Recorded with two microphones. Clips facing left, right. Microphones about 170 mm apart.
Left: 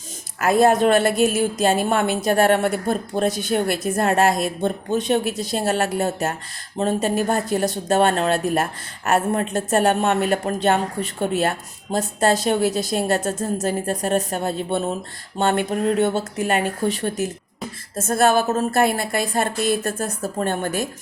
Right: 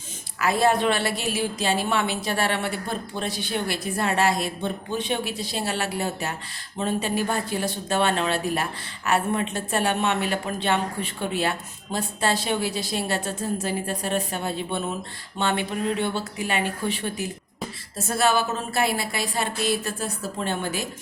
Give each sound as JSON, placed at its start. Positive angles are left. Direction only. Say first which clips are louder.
{"t": 0.3, "sound": "a woman's voice", "louder": "left 5 dB", "side_deg": 45}